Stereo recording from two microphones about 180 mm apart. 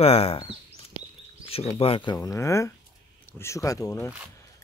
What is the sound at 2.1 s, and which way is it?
Speech, 15° left (ahead or behind).